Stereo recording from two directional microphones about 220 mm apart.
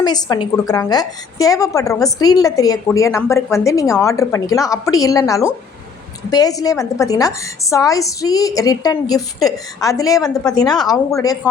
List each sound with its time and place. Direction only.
0.0 s a woman's voice: 20° left (ahead or behind)
10.2 s a woman's voice: 5° left (ahead or behind)
10.6 s a woman's voice: 15° left (ahead or behind)